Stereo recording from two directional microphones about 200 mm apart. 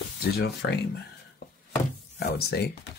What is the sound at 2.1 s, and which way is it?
Speech, 55° left (ahead or behind).